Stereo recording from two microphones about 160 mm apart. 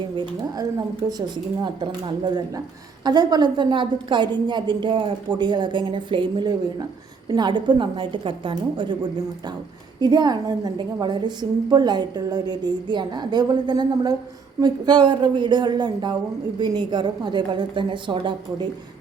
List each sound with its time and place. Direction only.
0.2 s a woman's voice: 25° right (ahead or behind)
10.0 s a woman's voice: 25° right (ahead or behind)